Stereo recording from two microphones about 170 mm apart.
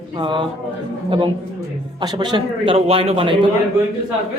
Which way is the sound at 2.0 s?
25° right (ahead or behind).